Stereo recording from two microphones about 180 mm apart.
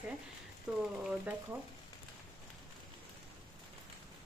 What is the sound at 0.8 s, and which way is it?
Speech, 5° right (ahead or behind).